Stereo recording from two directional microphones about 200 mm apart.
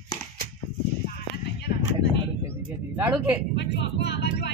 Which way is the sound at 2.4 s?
10° right (ahead or behind).